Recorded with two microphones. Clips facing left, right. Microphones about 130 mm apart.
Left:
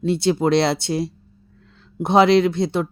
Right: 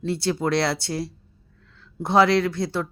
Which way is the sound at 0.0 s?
20° left (ahead or behind).